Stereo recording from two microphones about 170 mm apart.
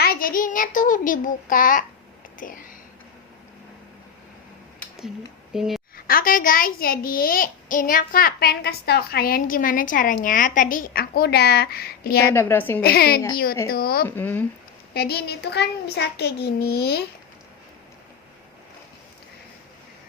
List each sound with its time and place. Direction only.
0.0 s child singing: 60° left (ahead or behind)
2.4 s speech: 50° left (ahead or behind)
4.8 s a sound: centre (ahead or behind)
5.5 s a woman's voice: centre (ahead or behind)
6.1 s a child's voice: 55° left (ahead or behind)
12.3 s a woman's voice: 15° left (ahead or behind)
12.8 s a child's voice: 65° left (ahead or behind)
14.2 s a woman's voice: 10° left (ahead or behind)
14.9 s a child's voice: 70° left (ahead or behind)